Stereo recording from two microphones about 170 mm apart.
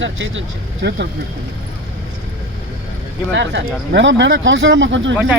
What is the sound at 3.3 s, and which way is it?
Speech, 90° right.